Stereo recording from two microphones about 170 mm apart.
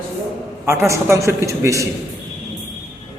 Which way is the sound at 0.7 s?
15° right (ahead or behind).